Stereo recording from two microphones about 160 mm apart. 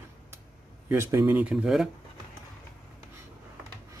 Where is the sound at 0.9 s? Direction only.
15° right (ahead or behind).